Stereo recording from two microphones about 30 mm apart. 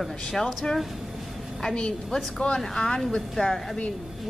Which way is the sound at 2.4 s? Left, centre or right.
Left.